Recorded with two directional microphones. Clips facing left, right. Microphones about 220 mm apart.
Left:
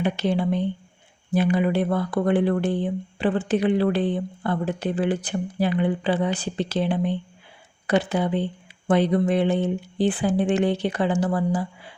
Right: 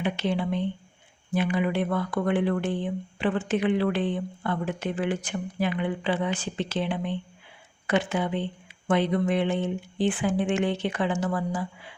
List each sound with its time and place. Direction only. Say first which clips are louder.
0.0 s speech: left 4 dB; 40° left (ahead or behind)